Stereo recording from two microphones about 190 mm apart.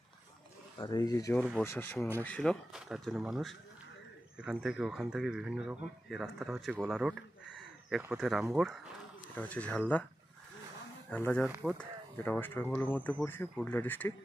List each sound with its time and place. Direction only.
0.7 s speech: 20° left (ahead or behind)
11.1 s speech: 5° left (ahead or behind)
11.4 s speech: 5° right (ahead or behind)
11.8 s speech: 10° left (ahead or behind)